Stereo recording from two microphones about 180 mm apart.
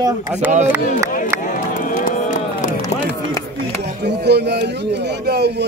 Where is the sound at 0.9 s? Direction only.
50° left (ahead or behind).